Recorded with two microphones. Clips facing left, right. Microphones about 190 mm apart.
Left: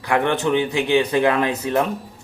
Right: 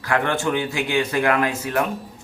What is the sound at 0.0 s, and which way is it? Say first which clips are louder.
Speech: left 2 dB; 20° left (ahead or behind).